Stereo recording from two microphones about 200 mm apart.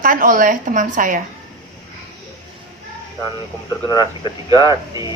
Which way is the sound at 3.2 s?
20° left (ahead or behind).